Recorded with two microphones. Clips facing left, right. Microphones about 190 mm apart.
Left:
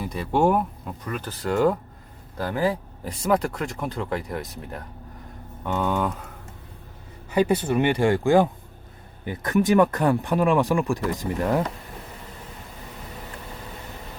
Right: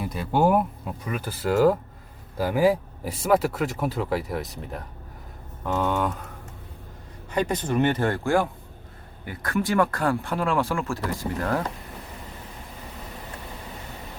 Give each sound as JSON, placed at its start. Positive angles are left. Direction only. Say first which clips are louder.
{"t": 0.0, "sound": "speech", "louder": "left 1 dB", "side_deg": 0}
{"t": 7.3, "sound": "speech", "louder": "left 4 dB", "side_deg": 10}